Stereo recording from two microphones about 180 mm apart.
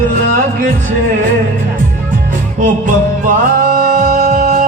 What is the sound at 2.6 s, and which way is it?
Music, 45° right (ahead or behind).